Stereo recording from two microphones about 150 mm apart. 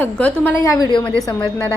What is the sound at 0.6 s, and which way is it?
Speech, 25° left (ahead or behind).